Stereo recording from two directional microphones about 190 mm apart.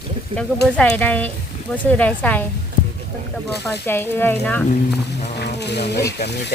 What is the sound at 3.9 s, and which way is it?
Speech, 10° left (ahead or behind).